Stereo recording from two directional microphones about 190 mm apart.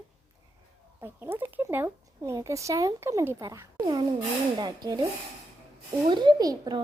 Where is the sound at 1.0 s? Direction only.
10° right (ahead or behind).